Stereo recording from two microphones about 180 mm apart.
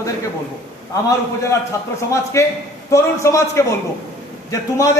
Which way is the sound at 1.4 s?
15° left (ahead or behind).